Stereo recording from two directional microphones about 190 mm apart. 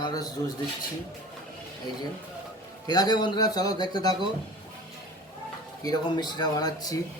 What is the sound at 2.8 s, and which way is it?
A man's voice, 20° left (ahead or behind).